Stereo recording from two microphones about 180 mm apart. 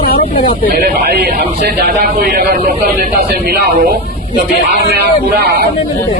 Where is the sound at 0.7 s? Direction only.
60° right (ahead or behind).